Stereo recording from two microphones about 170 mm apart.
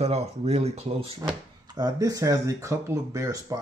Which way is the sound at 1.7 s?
20° right (ahead or behind).